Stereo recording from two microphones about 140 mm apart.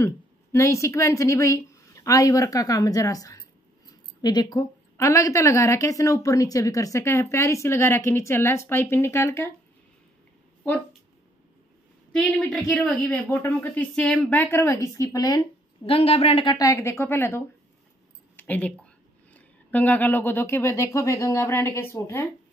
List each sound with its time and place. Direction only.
0.0 s a woman's voice: 20° left (ahead or behind)
12.1 s a woman's voice: centre (ahead or behind); by 15.4 s 25° left (ahead or behind)
15.8 s speech: 45° left (ahead or behind)
16.5 s a woman's voice: 25° left (ahead or behind)
18.3 s a sound: 15° left (ahead or behind)
19.3 s a woman's voice: 10° left (ahead or behind)